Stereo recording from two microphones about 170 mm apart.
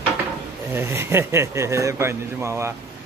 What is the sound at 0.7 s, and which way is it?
Speech, 15° right (ahead or behind).